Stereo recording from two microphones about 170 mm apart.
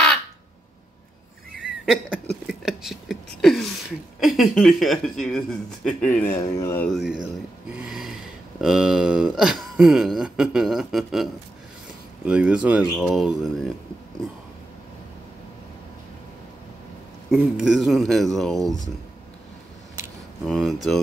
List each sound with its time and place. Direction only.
1.6 s a sound: 5° right (ahead or behind)
3.3 s speech: centre (ahead or behind)
6.2 s speech: 20° left (ahead or behind)
6.9 s speech: centre (ahead or behind)
12.3 s speech: 5° right (ahead or behind)
17.3 s speech: 5° right (ahead or behind)
20.4 s speech: centre (ahead or behind)